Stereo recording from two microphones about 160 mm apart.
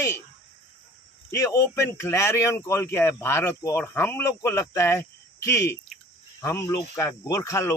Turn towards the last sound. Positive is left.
turn(degrees=20)  # may be behind; listen again after turning